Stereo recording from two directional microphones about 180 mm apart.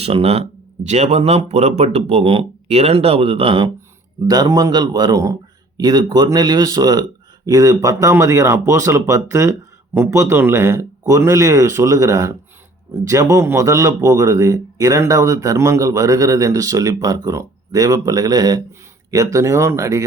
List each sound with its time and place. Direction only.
0.0 s a man's voice: 30° right (ahead or behind); by 20.1 s 15° right (ahead or behind)